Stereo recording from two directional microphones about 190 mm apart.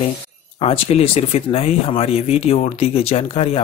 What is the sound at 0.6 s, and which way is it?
Speech, 30° left (ahead or behind).